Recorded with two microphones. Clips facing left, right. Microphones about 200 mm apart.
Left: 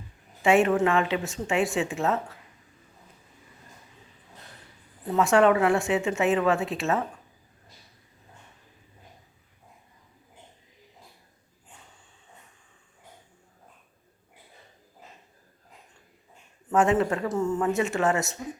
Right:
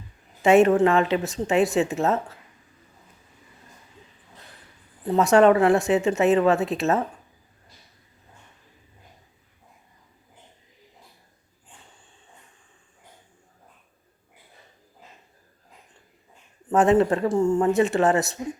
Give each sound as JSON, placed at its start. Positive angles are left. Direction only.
{"t": 0.4, "sound": "a woman's voice", "side_deg": -40}
{"t": 5.0, "sound": "a woman's voice", "side_deg": -40}
{"t": 16.6, "sound": "a woman's voice", "side_deg": -35}